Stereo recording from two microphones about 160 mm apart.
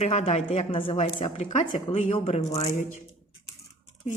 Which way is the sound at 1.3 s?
50° left (ahead or behind).